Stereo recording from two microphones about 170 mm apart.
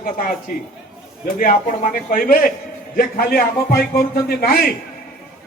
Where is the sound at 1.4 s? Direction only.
50° left (ahead or behind).